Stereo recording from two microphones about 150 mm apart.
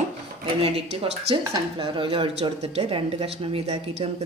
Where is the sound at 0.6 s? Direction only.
40° right (ahead or behind).